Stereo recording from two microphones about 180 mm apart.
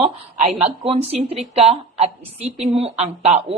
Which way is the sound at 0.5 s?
30° right (ahead or behind).